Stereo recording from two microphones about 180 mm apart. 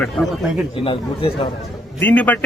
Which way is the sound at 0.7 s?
30° left (ahead or behind).